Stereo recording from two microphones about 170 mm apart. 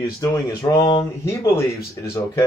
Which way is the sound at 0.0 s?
25° left (ahead or behind).